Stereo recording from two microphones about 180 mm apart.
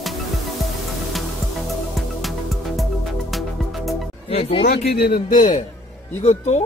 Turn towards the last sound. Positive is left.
turn(degrees=35)  # may be behind; listen again after turning